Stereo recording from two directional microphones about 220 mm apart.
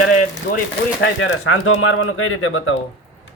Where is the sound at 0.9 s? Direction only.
60° left (ahead or behind).